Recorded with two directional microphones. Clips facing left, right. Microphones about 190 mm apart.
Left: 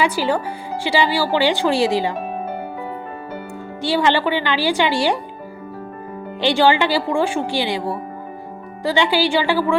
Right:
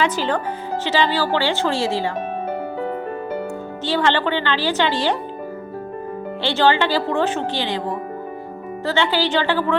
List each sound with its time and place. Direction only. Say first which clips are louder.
0.0 s speech: left 1 dB; 10° left (ahead or behind)
3.8 s speech: left 2 dB; 10° left (ahead or behind)
6.4 s speech: left 2 dB; 15° left (ahead or behind)